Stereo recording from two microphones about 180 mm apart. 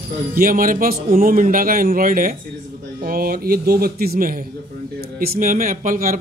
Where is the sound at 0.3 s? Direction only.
50° right (ahead or behind).